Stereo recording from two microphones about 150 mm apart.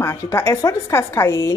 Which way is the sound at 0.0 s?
15° left (ahead or behind).